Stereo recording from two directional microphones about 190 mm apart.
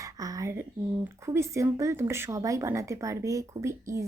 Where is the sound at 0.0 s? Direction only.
20° right (ahead or behind).